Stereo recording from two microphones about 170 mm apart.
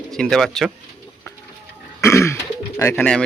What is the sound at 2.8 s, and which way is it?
Speech, 15° left (ahead or behind).